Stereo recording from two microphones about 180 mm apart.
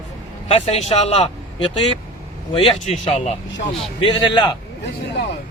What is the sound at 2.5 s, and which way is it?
Speech, 35° left (ahead or behind).